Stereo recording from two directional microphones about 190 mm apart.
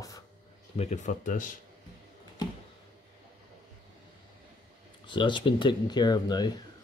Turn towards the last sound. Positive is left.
turn(degrees=20)  # may be behind; listen again after turning